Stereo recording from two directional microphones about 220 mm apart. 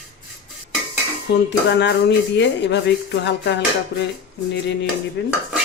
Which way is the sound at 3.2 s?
55° left (ahead or behind).